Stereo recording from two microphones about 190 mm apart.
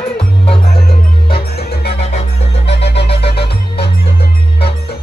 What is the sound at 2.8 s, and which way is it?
Music, 60° left (ahead or behind).